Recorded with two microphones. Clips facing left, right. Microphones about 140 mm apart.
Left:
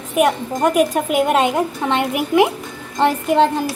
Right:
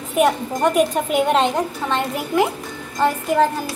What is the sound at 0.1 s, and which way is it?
A woman's voice, 5° left (ahead or behind).